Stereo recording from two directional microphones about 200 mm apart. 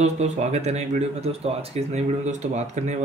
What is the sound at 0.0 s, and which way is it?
A man's voice, 35° right (ahead or behind).